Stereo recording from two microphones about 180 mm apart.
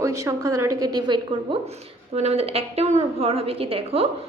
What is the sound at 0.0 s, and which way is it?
A woman's voice, 15° right (ahead or behind).